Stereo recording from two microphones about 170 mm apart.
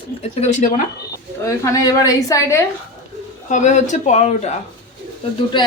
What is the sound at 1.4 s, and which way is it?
A woman's voice, 20° left (ahead or behind).